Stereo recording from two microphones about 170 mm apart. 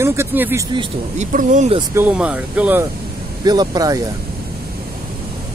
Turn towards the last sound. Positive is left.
turn(degrees=-20)  # may be behind; listen again after turning